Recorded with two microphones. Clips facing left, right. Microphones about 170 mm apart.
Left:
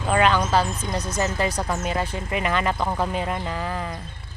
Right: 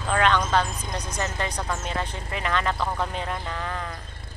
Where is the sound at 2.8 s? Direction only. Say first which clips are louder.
Left 3 dB; 20° left (ahead or behind).